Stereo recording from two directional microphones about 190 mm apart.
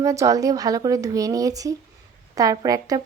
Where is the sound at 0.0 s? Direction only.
15° right (ahead or behind).